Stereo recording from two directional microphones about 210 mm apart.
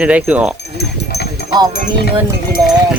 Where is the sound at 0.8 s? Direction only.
50° left (ahead or behind).